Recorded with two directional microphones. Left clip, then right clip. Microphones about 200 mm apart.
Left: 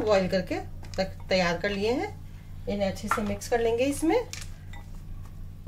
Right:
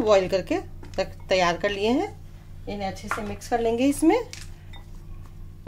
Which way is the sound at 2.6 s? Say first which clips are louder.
Left 2 dB; 25° right (ahead or behind).